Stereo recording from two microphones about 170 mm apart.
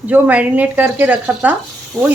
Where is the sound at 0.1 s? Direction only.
10° right (ahead or behind).